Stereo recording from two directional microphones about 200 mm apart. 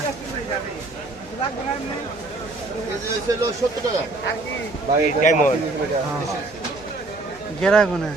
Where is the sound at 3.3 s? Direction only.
15° right (ahead or behind).